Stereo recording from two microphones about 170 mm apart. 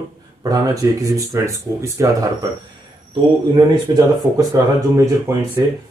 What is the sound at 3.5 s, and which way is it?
Speech, 25° right (ahead or behind).